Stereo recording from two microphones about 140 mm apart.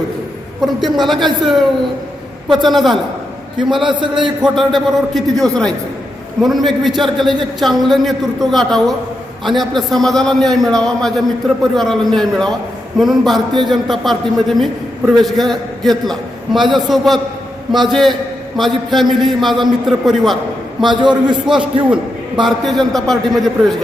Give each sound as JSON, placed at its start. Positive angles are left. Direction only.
{"t": 0.6, "sound": "a man's voice", "side_deg": 0}
{"t": 2.6, "sound": "a man's voice", "side_deg": 0}
{"t": 3.8, "sound": "a man's voice", "side_deg": -35}
{"t": 4.4, "sound": "a man's voice", "side_deg": 0}
{"t": 16.6, "sound": "a man's voice", "side_deg": -35}
{"t": 16.9, "sound": "a man's voice", "side_deg": 0}
{"t": 20.8, "sound": "a man's voice", "side_deg": -35}
{"t": 21.4, "sound": "a man's voice", "side_deg": -5}